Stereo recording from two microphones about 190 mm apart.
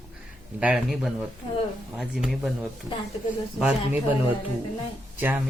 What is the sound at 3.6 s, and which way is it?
Speech, 5° right (ahead or behind).